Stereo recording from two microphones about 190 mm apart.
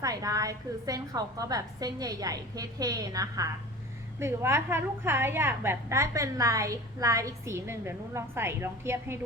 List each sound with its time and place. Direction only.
0.0 s a woman's voice: 20° right (ahead or behind)